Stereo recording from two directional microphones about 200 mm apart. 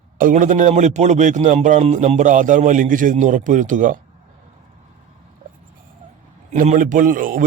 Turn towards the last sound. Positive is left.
turn(degrees=-40)  # may be behind; listen again after turning